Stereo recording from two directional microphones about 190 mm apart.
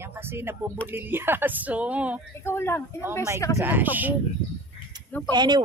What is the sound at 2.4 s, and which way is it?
Speech, 15° left (ahead or behind).